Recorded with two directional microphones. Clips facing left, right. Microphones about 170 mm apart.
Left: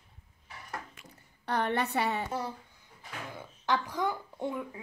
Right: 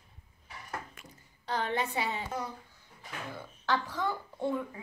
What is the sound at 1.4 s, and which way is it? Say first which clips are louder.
Speech: left 2 dB; 60° left (ahead or behind).